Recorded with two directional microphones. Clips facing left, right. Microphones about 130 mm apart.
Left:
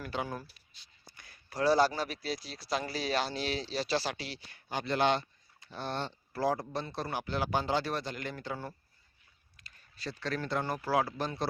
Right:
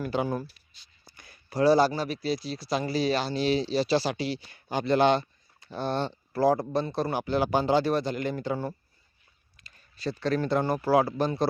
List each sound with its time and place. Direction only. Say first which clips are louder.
1.1 s a sound: right 8 dB; 20° right (ahead or behind)
1.7 s speech: right 5 dB; 5° right (ahead or behind)
3.7 s speech: right 7 dB; 15° right (ahead or behind)
6.1 s speech: right 8 dB; 45° right (ahead or behind); by 8.7 s 20° right (ahead or behind)
10.0 s speech: right 9 dB; 25° right (ahead or behind)